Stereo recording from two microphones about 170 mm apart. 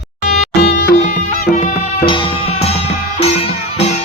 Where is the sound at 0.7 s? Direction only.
50° left (ahead or behind).